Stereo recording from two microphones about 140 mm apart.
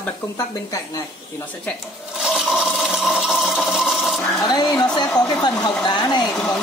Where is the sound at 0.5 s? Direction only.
25° left (ahead or behind).